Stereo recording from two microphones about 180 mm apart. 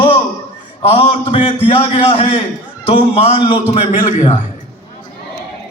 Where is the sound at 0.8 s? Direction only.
30° left (ahead or behind).